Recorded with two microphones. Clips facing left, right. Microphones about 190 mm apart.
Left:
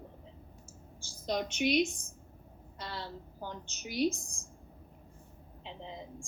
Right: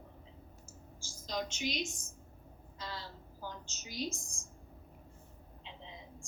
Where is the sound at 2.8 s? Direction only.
65° left (ahead or behind).